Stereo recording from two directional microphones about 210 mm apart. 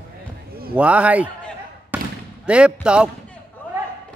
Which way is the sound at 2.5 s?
5° right (ahead or behind).